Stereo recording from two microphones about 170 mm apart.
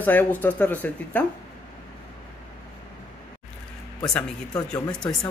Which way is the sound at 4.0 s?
5° left (ahead or behind).